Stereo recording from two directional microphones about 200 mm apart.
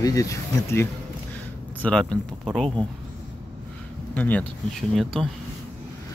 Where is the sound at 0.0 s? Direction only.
15° left (ahead or behind); by 2.7 s centre (ahead or behind).